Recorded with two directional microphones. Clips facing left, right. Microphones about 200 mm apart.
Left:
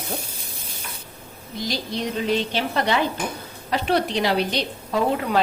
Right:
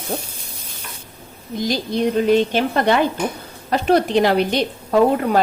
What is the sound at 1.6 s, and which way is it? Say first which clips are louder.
A woman's voice: right 7 dB; 50° right (ahead or behind).